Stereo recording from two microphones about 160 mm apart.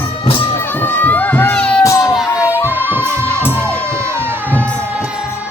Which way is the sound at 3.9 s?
15° right (ahead or behind).